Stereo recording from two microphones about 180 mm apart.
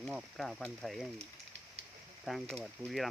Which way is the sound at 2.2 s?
Centre (ahead or behind).